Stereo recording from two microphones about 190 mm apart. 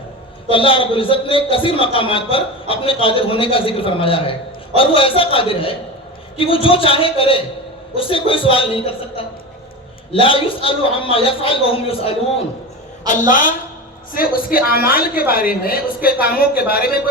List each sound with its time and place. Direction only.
0.4 s a man's voice: 30° left (ahead or behind)
13.1 s a man's voice: 45° left (ahead or behind)